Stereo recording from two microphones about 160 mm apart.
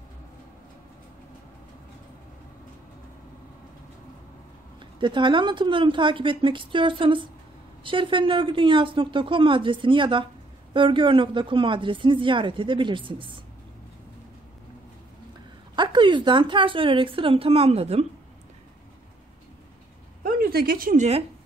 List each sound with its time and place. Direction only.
5.0 s speech: 30° right (ahead or behind)
15.7 s a woman's voice: 30° right (ahead or behind)
20.2 s a sound: 65° right (ahead or behind)
20.9 s speech: 45° right (ahead or behind)